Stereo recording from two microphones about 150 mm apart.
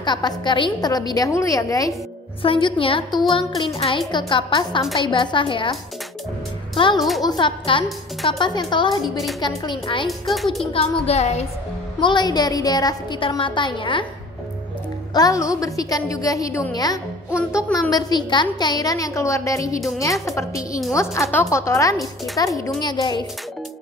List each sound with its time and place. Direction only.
0.0 s a woman's voice: 30° left (ahead or behind)
2.4 s a woman's voice: 35° left (ahead or behind)
7.0 s a woman's voice: centre (ahead or behind)
7.2 s a woman's voice: 30° left (ahead or behind)
9.0 s a woman's voice: centre (ahead or behind)
9.6 s a woman's voice: 30° left (ahead or behind)
10.0 s a woman's voice: centre (ahead or behind)
10.6 s speech: 40° left (ahead or behind)
12.0 s a woman's voice: 30° left (ahead or behind)
15.1 s a woman's voice: 25° left (ahead or behind)
17.3 s a woman's voice: 5° right (ahead or behind)
17.7 s a woman's voice: 25° left (ahead or behind)
21.9 s a woman's voice: centre (ahead or behind)
22.8 s a woman's voice: 30° left (ahead or behind)